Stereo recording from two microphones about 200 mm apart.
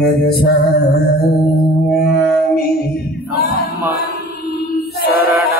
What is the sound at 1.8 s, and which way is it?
Mantra, 50° left (ahead or behind).